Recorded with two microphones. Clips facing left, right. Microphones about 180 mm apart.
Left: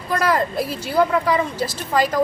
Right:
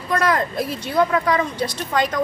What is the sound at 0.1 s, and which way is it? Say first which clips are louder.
A woman's voice: even; centre (ahead or behind).